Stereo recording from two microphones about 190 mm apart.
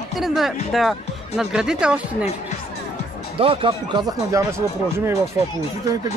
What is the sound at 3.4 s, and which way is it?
Speech, 30° right (ahead or behind).